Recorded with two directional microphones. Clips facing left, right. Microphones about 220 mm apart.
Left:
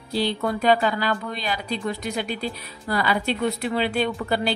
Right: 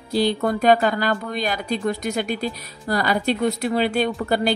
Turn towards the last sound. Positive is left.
turn(degrees=-45)  # may be behind; listen again after turning